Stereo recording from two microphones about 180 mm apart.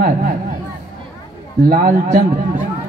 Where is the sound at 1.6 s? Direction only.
55° right (ahead or behind).